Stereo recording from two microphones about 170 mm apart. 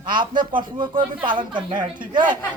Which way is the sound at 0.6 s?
25° right (ahead or behind).